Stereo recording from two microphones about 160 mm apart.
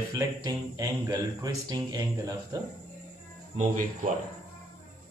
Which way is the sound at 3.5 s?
45° right (ahead or behind).